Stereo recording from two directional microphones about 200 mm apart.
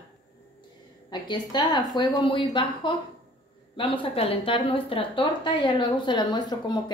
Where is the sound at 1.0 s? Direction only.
20° left (ahead or behind).